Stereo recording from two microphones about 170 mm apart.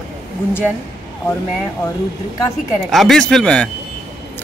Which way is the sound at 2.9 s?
Centre (ahead or behind).